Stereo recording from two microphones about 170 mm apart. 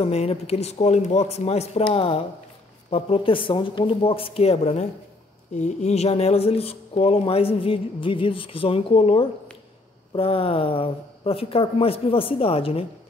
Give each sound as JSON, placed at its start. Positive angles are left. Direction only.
{"t": 0.0, "sound": "speech", "side_deg": 35}